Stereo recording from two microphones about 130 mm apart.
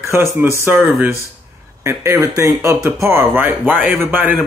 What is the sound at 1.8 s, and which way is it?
A man's voice, 20° right (ahead or behind).